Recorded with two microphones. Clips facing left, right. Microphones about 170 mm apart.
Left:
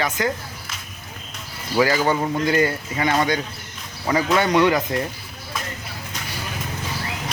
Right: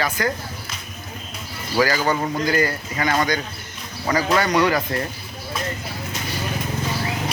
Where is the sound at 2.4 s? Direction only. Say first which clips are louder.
Left 2 dB; 25° left (ahead or behind).